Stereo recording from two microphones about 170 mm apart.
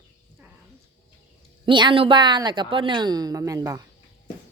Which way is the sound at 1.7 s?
30° right (ahead or behind).